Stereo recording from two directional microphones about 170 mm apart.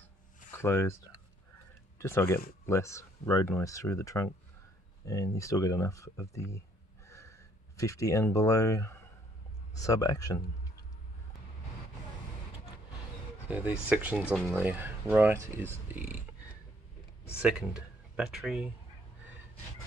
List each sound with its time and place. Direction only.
0.5 s speech: 15° left (ahead or behind)
2.0 s speech: 15° left (ahead or behind)
13.5 s speech: 10° right (ahead or behind)
17.4 s speech: 5° right (ahead or behind)